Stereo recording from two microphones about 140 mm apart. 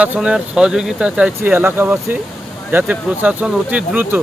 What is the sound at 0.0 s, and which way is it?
Speech, 5° right (ahead or behind).